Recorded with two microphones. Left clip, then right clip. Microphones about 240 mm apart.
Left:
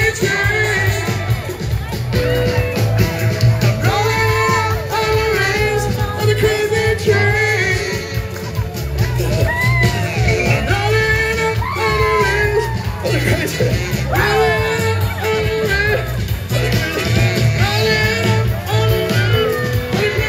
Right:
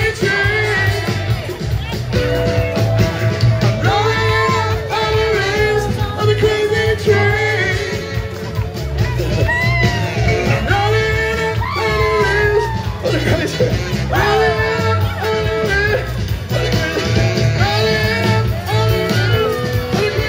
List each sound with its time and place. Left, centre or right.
0.0 s music: right
2.1 s music: right
9.8 s music: right